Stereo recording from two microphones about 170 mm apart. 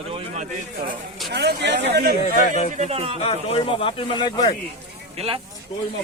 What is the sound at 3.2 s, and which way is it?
Speech, 35° left (ahead or behind).